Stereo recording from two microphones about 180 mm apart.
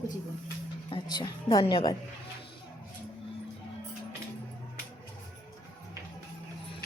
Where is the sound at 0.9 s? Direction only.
25° left (ahead or behind).